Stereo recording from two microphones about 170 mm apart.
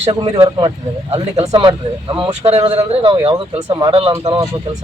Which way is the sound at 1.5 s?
25° right (ahead or behind).